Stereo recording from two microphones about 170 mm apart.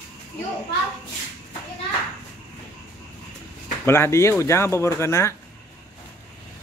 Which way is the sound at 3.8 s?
15° left (ahead or behind).